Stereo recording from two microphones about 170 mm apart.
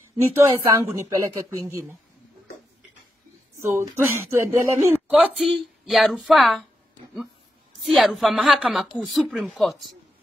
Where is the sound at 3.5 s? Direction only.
15° right (ahead or behind).